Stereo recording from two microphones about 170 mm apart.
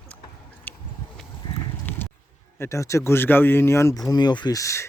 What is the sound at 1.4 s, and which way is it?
Clip-clop, 25° left (ahead or behind).